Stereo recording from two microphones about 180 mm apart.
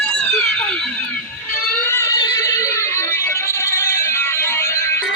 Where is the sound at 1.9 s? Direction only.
15° left (ahead or behind).